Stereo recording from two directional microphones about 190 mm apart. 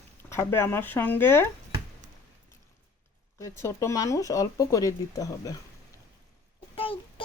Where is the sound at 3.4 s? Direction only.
15° left (ahead or behind).